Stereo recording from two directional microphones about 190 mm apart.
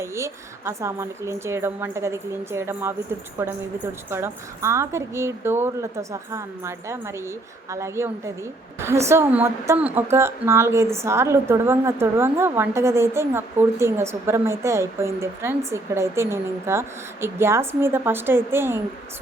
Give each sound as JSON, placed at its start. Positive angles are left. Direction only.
{"t": 0.0, "sound": "a woman's voice", "side_deg": -15}
{"t": 4.1, "sound": "a woman's voice", "side_deg": -15}